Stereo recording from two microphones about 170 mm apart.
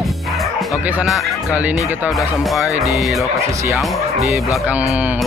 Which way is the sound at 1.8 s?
5° right (ahead or behind).